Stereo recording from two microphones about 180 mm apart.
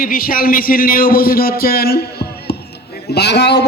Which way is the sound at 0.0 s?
50° left (ahead or behind).